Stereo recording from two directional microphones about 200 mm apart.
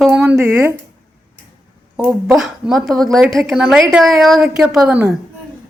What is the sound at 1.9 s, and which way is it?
Speech, 5° right (ahead or behind).